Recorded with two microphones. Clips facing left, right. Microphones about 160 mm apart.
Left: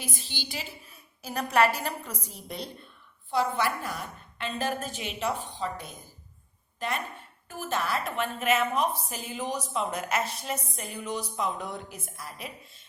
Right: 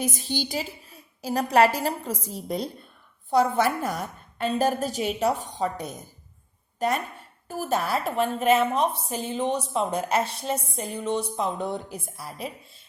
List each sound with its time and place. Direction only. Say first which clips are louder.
0.0 s a woman's voice: right 10 dB; 45° right (ahead or behind)